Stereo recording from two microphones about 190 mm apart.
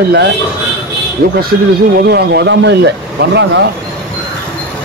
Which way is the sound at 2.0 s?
60° right (ahead or behind).